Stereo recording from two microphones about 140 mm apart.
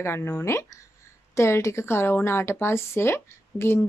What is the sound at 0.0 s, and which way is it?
Speech, 20° left (ahead or behind).